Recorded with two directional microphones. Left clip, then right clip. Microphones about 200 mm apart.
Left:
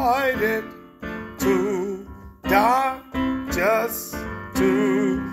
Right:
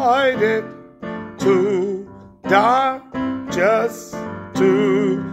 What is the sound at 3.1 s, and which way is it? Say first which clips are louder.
Music: right 1 dB; 25° left (ahead or behind).